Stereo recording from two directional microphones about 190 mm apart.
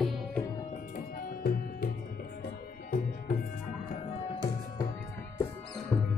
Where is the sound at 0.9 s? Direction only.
50° left (ahead or behind).